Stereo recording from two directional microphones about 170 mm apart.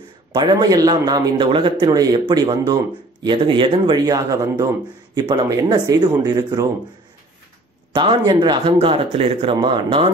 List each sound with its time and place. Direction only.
0.3 s speech: 25° right (ahead or behind)
7.9 s speech: 30° right (ahead or behind)